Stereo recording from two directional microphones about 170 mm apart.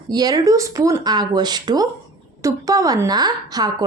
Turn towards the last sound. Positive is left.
turn(degrees=-25)  # may be behind; listen again after turning